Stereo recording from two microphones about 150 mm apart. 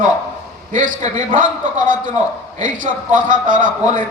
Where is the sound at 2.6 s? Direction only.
60° right (ahead or behind).